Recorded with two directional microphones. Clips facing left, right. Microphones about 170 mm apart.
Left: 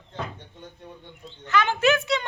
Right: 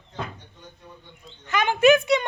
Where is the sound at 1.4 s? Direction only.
15° right (ahead or behind).